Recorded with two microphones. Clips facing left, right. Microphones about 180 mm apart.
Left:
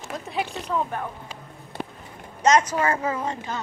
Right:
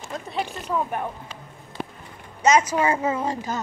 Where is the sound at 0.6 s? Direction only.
75° left (ahead or behind).